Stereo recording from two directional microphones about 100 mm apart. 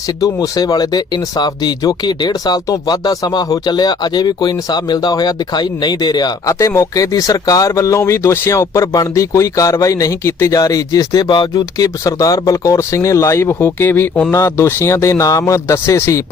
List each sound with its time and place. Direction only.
0.2 s speech: 40° left (ahead or behind)